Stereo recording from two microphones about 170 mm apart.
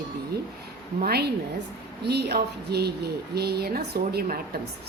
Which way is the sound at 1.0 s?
70° right (ahead or behind).